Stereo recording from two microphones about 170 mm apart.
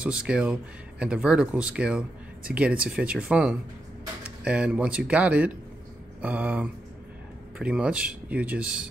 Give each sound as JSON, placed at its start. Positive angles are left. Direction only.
{"t": 0.0, "sound": "speech", "side_deg": -5}